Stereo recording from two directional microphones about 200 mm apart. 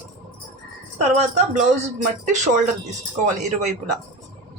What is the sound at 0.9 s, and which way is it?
Speech, 35° right (ahead or behind).